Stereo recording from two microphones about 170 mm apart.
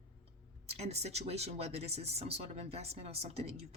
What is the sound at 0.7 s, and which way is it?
Speech, 40° right (ahead or behind).